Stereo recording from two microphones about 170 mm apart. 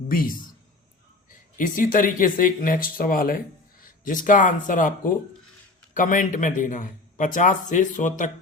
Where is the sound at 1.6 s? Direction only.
50° left (ahead or behind).